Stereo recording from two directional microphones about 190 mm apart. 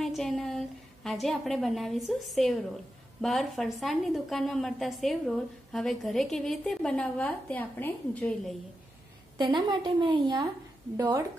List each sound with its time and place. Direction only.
0.0 s a woman's voice: centre (ahead or behind)
9.4 s a woman's voice: 25° right (ahead or behind)